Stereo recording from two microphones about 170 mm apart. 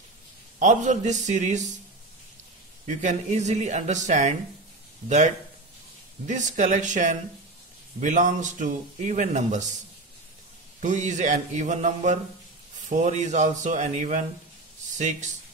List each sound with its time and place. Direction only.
0.6 s speech: 45° right (ahead or behind)
3.0 s speech: 45° right (ahead or behind)
10.8 s speech: 45° right (ahead or behind)